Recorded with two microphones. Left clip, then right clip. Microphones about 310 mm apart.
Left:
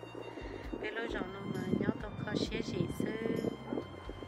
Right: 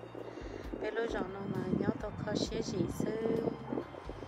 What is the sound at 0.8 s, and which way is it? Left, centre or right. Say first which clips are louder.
Music: right 3 dB; centre.